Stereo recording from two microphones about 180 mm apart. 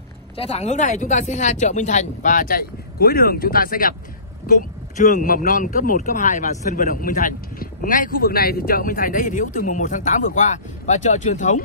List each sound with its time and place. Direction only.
0.4 s speech: 35° left (ahead or behind)